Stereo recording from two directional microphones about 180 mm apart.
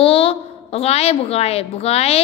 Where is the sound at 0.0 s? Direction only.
30° left (ahead or behind).